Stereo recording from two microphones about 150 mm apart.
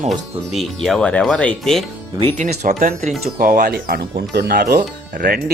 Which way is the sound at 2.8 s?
65° right (ahead or behind).